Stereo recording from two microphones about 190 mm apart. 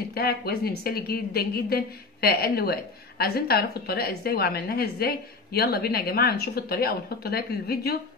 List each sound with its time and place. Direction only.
0.1 s a woman's voice: 55° left (ahead or behind)